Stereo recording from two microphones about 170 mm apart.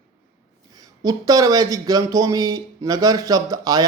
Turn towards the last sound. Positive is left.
turn(degrees=-20)  # may be behind; listen again after turning